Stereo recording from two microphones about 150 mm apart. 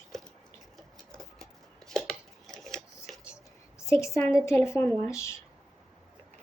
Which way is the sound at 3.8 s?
20° left (ahead or behind).